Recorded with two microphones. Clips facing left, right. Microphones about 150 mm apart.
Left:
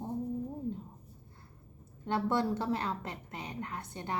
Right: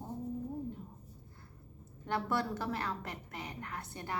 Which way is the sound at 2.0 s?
20° left (ahead or behind).